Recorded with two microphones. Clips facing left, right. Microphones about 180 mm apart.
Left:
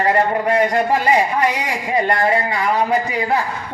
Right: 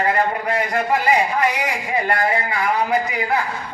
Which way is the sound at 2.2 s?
30° left (ahead or behind).